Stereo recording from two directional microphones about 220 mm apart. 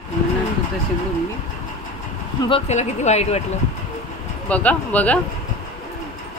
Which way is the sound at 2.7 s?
30° left (ahead or behind).